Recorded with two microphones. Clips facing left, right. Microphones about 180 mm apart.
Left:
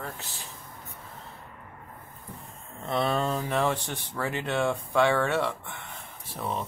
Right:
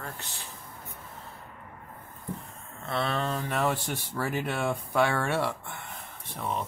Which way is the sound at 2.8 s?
15° left (ahead or behind).